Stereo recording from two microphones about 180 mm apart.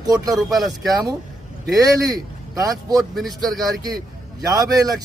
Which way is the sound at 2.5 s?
20° right (ahead or behind).